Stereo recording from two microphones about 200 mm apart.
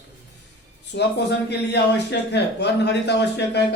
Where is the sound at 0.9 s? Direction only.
60° left (ahead or behind).